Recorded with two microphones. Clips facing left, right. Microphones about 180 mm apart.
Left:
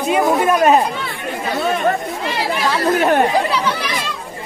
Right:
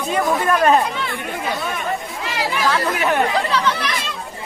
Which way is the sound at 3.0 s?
50° left (ahead or behind).